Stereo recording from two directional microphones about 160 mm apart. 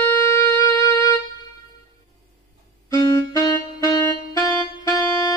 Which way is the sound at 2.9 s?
20° left (ahead or behind).